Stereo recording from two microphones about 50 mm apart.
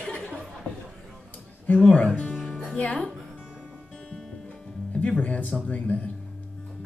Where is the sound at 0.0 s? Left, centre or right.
Left.